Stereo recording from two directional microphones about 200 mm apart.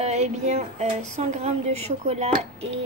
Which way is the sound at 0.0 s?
35° right (ahead or behind).